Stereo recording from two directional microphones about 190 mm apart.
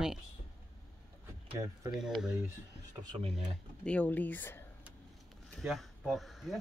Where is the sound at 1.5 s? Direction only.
25° right (ahead or behind).